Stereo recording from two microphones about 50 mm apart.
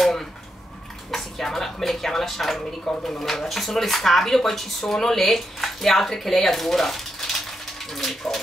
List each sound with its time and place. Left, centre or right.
0.0 s a sound: centre
1.1 s speech: centre
2.8 s speech: centre
3.2 s speech: centre